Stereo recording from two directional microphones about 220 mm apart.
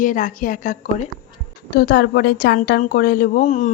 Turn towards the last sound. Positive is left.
turn(degrees=35)  # may be behind; listen again after turning